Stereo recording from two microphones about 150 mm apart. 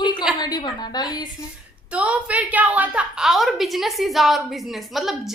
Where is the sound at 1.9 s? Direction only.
10° right (ahead or behind).